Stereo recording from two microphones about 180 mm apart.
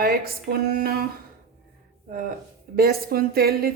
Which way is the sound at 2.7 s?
60° right (ahead or behind).